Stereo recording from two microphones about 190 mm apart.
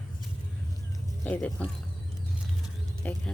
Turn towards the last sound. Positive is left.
turn(degrees=10)  # may be behind; listen again after turning